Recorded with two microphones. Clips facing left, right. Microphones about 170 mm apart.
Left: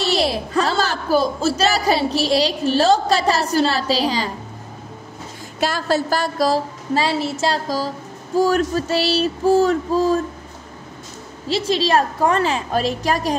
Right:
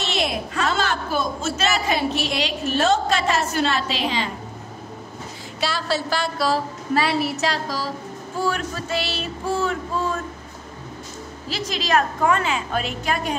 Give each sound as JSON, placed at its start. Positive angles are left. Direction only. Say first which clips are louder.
{"t": 0.0, "sound": "a woman's voice", "louder": "left 5 dB", "side_deg": 35}
{"t": 5.6, "sound": "a woman's voice", "louder": "left 5 dB", "side_deg": 45}
{"t": 6.9, "sound": "a woman's voice", "louder": "left 1 dB", "side_deg": 30}
{"t": 11.4, "sound": "a woman's voice", "louder": "left 8 dB", "side_deg": 30}